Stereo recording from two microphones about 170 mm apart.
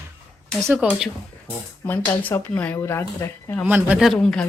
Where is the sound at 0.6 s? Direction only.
10° right (ahead or behind).